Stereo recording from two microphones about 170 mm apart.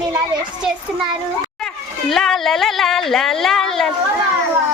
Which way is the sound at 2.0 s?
Centre (ahead or behind).